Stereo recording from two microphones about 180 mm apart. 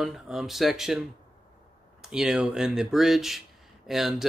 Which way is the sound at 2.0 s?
Centre (ahead or behind).